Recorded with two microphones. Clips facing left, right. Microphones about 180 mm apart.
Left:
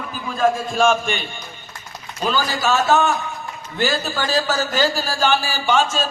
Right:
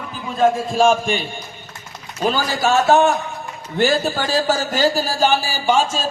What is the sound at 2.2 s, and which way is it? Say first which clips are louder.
A man's voice: right 2 dB; 50° right (ahead or behind).